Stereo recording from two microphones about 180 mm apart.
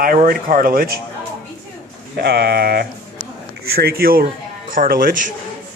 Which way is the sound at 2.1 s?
60° right (ahead or behind).